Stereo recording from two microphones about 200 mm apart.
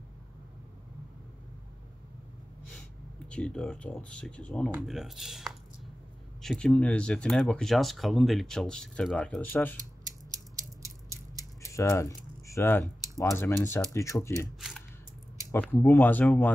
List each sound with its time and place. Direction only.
3.3 s speech: 5° left (ahead or behind)
10.0 s a sound: 15° right (ahead or behind)
11.6 s speech: 15° left (ahead or behind)
15.7 s speech: 10° left (ahead or behind)